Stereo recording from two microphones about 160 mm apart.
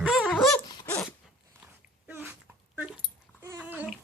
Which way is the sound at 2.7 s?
5° right (ahead or behind).